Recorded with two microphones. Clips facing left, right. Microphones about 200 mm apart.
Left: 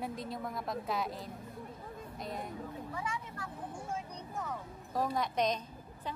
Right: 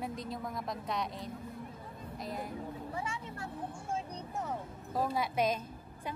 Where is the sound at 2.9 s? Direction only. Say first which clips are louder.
Left 1 dB; 25° right (ahead or behind).